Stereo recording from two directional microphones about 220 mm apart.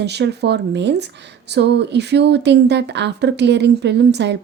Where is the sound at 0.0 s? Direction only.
50° right (ahead or behind).